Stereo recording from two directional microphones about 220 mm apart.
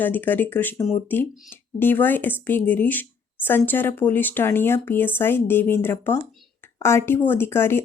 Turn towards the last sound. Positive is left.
turn(degrees=10)  # may be behind; listen again after turning